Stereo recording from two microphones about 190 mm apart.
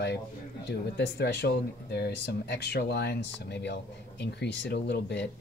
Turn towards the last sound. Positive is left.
turn(degrees=60)  # may be behind; listen again after turning